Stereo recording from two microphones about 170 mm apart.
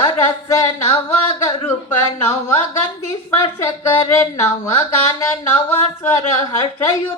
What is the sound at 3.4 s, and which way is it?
Speech, 20° left (ahead or behind).